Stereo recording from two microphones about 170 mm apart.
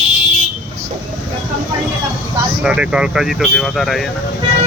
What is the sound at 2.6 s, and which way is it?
Speech, 5° right (ahead or behind).